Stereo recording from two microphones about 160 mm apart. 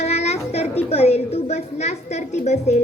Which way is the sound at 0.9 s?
40° left (ahead or behind).